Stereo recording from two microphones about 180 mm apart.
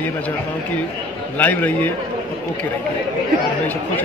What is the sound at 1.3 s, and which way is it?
Speech, 10° left (ahead or behind).